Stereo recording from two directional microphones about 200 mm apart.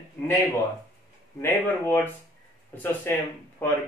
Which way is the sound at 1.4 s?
10° left (ahead or behind).